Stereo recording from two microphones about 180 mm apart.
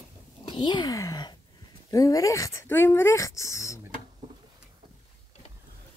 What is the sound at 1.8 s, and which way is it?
Speech, 20° left (ahead or behind).